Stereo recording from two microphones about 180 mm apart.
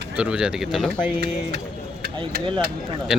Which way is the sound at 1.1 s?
65° right (ahead or behind).